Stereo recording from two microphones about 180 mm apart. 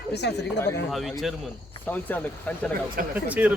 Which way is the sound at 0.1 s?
70° left (ahead or behind).